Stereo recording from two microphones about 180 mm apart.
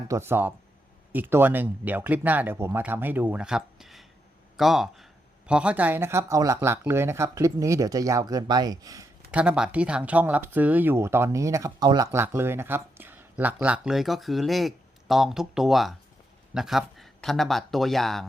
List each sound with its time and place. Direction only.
0.1 s speech: 15° right (ahead or behind)
9.3 s speech: 5° right (ahead or behind)